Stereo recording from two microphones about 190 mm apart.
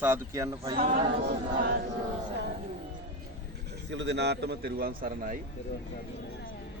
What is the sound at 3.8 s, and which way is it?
A man's voice, 65° right (ahead or behind).